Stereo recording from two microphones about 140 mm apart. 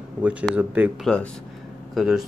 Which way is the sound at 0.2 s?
10° right (ahead or behind).